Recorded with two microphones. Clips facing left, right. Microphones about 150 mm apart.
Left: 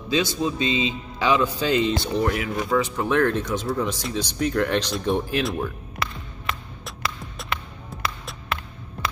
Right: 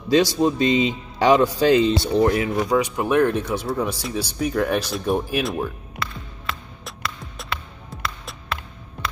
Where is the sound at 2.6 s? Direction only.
15° right (ahead or behind).